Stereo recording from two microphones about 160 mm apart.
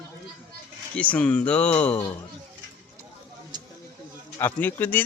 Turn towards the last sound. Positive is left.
turn(degrees=10)  # may be behind; listen again after turning